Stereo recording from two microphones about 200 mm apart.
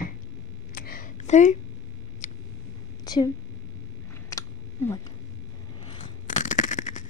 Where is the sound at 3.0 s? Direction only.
20° left (ahead or behind).